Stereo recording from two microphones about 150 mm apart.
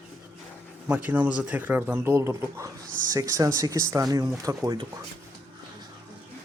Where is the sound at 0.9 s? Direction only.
10° right (ahead or behind).